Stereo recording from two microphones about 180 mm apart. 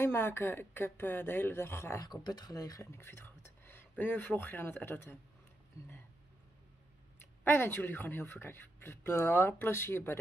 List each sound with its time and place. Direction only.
0.0 s a woman's voice: 10° left (ahead or behind)
7.4 s a woman's voice: 10° left (ahead or behind)